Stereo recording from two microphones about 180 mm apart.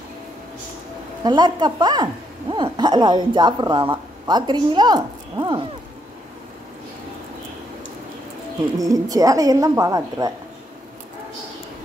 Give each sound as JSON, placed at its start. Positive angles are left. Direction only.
{"t": 1.2, "sound": "speech", "side_deg": -25}
{"t": 8.7, "sound": "speech", "side_deg": -20}